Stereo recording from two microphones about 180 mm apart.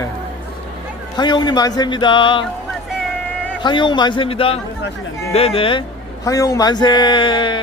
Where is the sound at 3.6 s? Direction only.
25° left (ahead or behind).